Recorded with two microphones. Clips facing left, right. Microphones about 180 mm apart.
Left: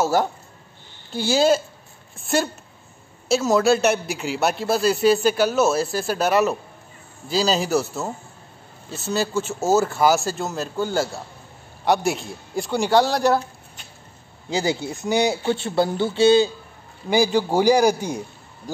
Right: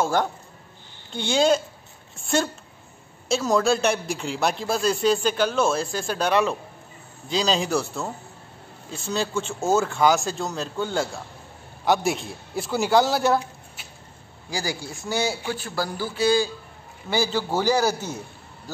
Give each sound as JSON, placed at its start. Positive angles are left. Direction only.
{"t": 0.0, "sound": "a man's voice", "side_deg": 5}
{"t": 14.5, "sound": "a man's voice", "side_deg": 20}